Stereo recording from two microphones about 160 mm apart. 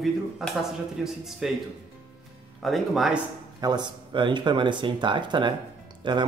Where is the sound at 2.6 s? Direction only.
Centre (ahead or behind).